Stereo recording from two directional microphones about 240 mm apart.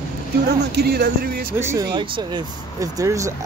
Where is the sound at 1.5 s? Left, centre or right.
Centre.